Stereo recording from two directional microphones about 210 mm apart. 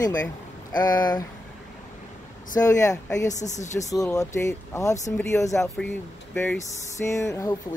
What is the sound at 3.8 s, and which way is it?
Speech, 15° left (ahead or behind).